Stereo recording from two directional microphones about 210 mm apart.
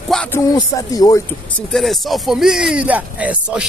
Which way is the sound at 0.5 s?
15° left (ahead or behind).